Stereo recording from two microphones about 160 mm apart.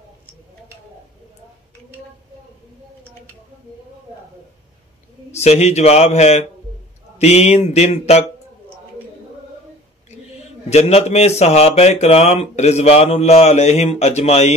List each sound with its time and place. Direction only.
5.3 s speech: 45° left (ahead or behind)
10.7 s speech: 40° left (ahead or behind)